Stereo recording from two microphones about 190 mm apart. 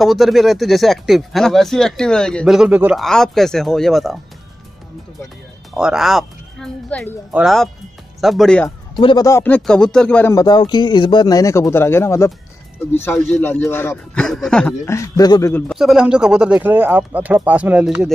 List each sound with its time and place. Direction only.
0.0 s speech: centre (ahead or behind)
5.8 s speech: 5° right (ahead or behind)
8.6 s speech: 25° left (ahead or behind); by 10.3 s 5° left (ahead or behind)
10.3 s speech: 20° left (ahead or behind); by 14.8 s 5° left (ahead or behind)
14.9 s speech: 15° left (ahead or behind)
15.7 s speech: centre (ahead or behind)